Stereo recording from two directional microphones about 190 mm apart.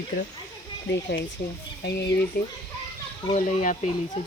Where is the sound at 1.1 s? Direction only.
65° left (ahead or behind).